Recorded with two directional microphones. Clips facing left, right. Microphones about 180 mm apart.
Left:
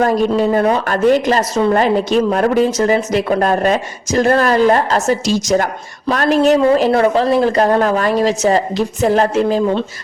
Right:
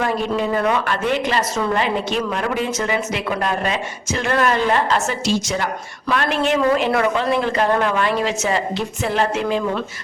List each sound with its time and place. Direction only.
0.0 s speech: 40° left (ahead or behind)